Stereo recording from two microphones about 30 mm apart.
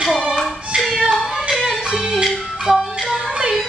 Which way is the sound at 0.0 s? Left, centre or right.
Centre.